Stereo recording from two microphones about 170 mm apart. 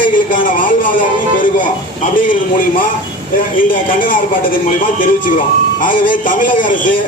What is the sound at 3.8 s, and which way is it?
Speech, 55° left (ahead or behind).